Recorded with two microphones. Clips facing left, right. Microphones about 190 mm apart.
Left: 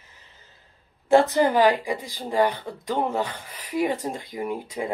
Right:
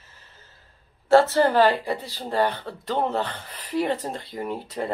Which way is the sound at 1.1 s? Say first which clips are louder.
Right 1 dB; 15° left (ahead or behind).